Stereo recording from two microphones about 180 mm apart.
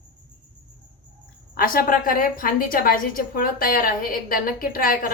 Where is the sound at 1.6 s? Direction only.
50° left (ahead or behind).